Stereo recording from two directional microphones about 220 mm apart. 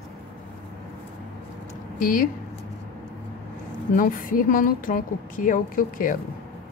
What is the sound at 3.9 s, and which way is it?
A woman's voice, 40° left (ahead or behind).